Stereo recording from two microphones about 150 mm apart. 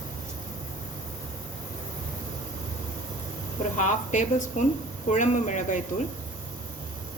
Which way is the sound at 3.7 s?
55° left (ahead or behind).